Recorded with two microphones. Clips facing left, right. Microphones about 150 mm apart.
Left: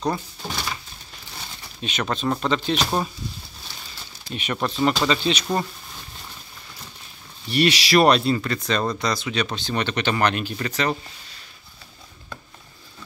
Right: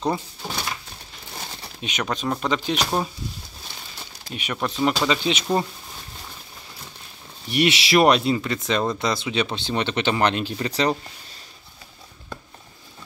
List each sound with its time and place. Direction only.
0.0 s speech: 10° right (ahead or behind)
1.8 s speech: 15° right (ahead or behind)
4.3 s speech: 5° right (ahead or behind)
7.4 s speech: 20° right (ahead or behind)